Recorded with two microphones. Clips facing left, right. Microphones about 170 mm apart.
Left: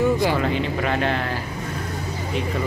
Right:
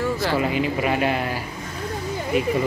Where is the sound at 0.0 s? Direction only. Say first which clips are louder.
Left 3 dB; 15° left (ahead or behind).